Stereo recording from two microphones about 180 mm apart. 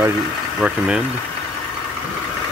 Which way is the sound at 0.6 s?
5° right (ahead or behind).